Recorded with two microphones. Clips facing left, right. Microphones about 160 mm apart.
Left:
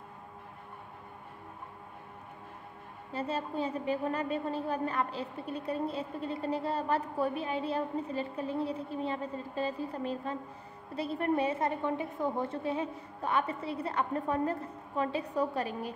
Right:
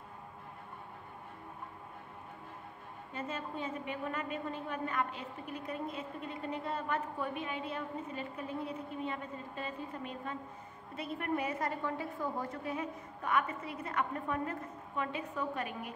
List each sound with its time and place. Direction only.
3.1 s a woman's voice: 35° left (ahead or behind)